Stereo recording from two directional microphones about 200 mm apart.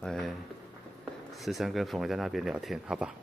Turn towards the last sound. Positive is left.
turn(degrees=-5)  # may be behind; listen again after turning